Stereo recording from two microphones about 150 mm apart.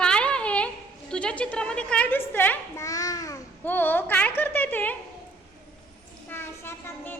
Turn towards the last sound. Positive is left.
turn(degrees=15)  # may be behind; listen again after turning